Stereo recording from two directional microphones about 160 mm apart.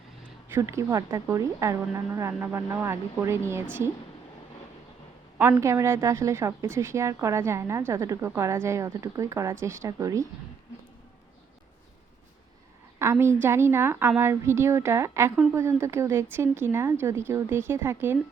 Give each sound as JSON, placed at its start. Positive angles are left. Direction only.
{"t": 0.5, "sound": "a woman's voice", "side_deg": -20}
{"t": 5.4, "sound": "a woman's voice", "side_deg": -15}
{"t": 13.0, "sound": "a woman's voice", "side_deg": -15}